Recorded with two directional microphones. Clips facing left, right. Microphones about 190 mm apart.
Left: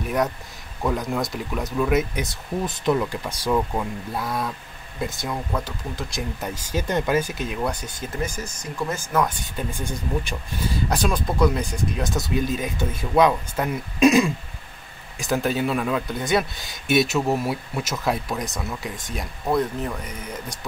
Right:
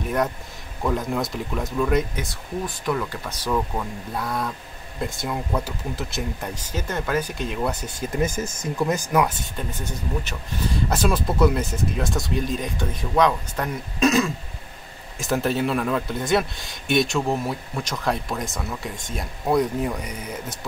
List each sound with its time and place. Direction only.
0.8 s speech: centre (ahead or behind)
2.1 s speech: 20° left (ahead or behind); by 6.5 s 5° right (ahead or behind)
6.5 s speech: 10° left (ahead or behind)
8.1 s speech: 20° right (ahead or behind)
9.7 s speech: 10° left (ahead or behind)
10.9 s speech: centre (ahead or behind)
15.1 s speech: centre (ahead or behind)
19.5 s speech: 10° right (ahead or behind)